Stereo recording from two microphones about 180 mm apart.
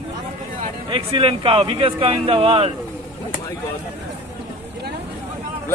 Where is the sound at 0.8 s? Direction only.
30° right (ahead or behind).